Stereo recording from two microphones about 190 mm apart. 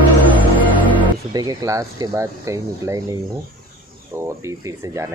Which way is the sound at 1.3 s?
20° right (ahead or behind).